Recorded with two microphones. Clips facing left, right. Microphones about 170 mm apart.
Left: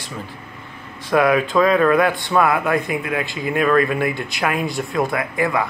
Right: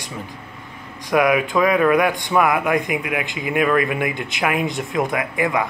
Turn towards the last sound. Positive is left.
turn(degrees=-20)  # may be behind; listen again after turning